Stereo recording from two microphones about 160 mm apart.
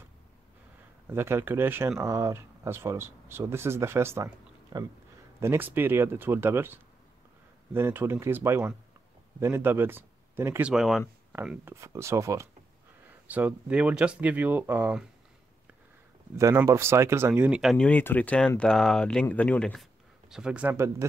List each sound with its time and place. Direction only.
1.0 s speech: 15° right (ahead or behind)
5.4 s speech: 15° right (ahead or behind)
10.7 s speech: centre (ahead or behind)
11.6 s speech: 15° right (ahead or behind)
16.3 s speech: 20° right (ahead or behind)